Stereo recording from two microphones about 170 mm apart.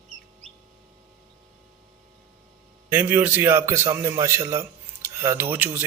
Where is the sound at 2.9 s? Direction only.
10° right (ahead or behind).